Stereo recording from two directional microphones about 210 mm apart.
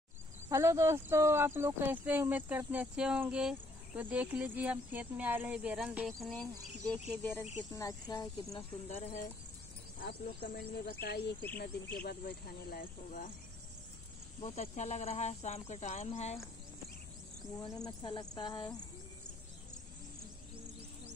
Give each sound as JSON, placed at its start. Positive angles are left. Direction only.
{"t": 0.5, "sound": "speech", "side_deg": -15}
{"t": 9.0, "sound": "speech", "side_deg": 35}
{"t": 10.0, "sound": "speech", "side_deg": 50}
{"t": 14.4, "sound": "speech", "side_deg": 30}
{"t": 17.8, "sound": "speech", "side_deg": 20}